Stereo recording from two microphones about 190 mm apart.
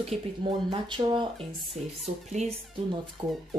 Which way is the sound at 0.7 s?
25° right (ahead or behind).